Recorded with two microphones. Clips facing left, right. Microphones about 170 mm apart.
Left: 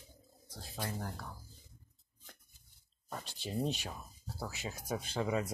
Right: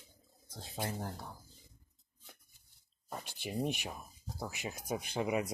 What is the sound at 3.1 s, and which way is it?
Speech, 10° right (ahead or behind).